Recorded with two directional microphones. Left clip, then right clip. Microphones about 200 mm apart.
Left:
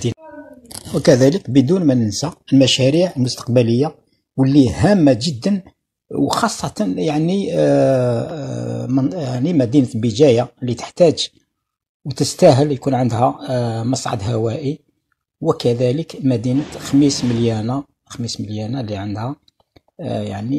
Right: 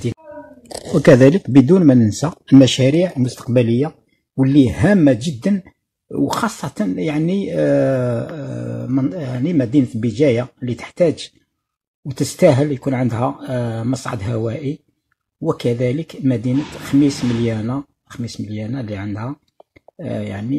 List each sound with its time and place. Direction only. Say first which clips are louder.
0.9 s speech: right 2 dB; 35° right (ahead or behind)
2.9 s speech: left 1 dB; 15° right (ahead or behind)